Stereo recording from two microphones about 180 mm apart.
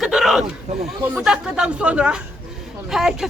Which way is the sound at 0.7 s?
40° right (ahead or behind).